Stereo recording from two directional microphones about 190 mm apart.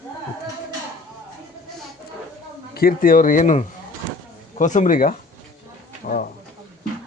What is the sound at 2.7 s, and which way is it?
Speech, 50° left (ahead or behind).